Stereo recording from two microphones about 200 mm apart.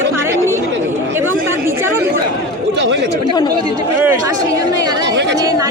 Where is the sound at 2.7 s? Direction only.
60° right (ahead or behind).